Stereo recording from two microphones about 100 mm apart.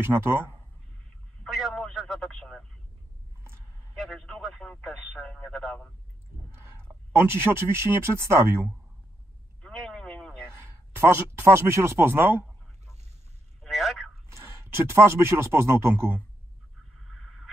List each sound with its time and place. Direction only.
0.0 s speech: 25° right (ahead or behind)
1.4 s telephone: centre (ahead or behind)
3.9 s speech: centre (ahead or behind)
7.1 s speech: 25° right (ahead or behind)
9.6 s a sound: 10° left (ahead or behind)
10.5 s a man's voice: 25° right (ahead or behind)
13.6 s a sound: centre (ahead or behind)
14.3 s speech: 30° right (ahead or behind)